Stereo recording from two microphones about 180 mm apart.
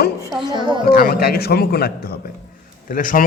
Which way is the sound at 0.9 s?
55° left (ahead or behind).